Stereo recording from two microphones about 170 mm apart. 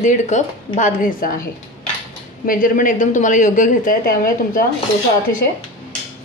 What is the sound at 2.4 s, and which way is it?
A woman's voice, 55° left (ahead or behind).